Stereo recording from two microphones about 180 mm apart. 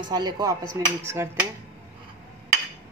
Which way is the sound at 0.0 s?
25° right (ahead or behind).